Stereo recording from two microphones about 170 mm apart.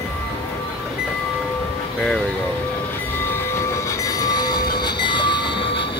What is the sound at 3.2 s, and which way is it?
Train, 15° left (ahead or behind).